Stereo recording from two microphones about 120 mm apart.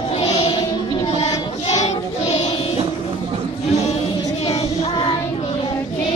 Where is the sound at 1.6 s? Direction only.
65° left (ahead or behind).